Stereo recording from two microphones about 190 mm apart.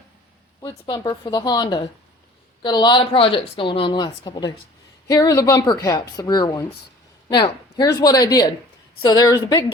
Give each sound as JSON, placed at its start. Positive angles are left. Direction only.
{"t": 0.6, "sound": "a woman's voice", "side_deg": 20}